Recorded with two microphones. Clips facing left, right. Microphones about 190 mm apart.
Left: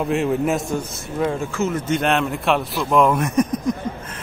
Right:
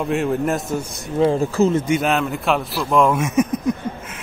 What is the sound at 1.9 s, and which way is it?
A man's voice, centre (ahead or behind).